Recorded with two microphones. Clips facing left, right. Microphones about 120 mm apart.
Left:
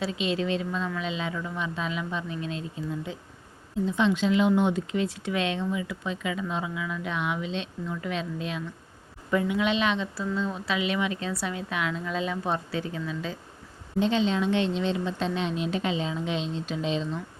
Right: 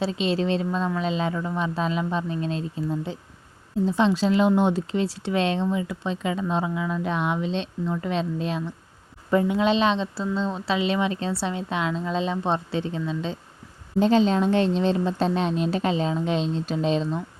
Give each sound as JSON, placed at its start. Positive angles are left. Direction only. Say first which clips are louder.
{"t": 0.0, "sound": "a woman's voice", "louder": "right 4 dB", "side_deg": -35}
{"t": 14.0, "sound": "speech", "louder": "right 5 dB", "side_deg": -40}